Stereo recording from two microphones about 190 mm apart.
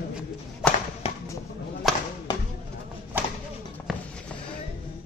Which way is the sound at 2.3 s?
20° left (ahead or behind).